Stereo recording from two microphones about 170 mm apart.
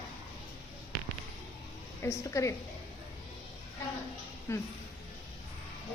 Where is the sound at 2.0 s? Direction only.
15° left (ahead or behind).